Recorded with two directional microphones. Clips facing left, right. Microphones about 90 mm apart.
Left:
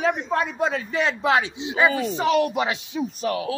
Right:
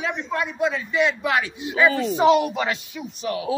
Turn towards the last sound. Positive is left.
turn(degrees=35)  # may be behind; listen again after turning